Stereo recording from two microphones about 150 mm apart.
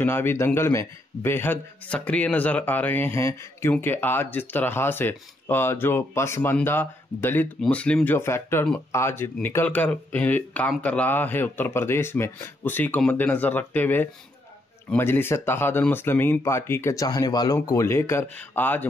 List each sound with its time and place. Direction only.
0.0 s speech: 15° left (ahead or behind)